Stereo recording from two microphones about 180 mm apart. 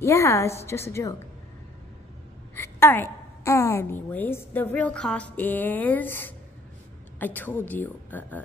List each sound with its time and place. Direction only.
0.0 s a woman's voice: 15° left (ahead or behind)
2.5 s a woman's voice: 10° left (ahead or behind)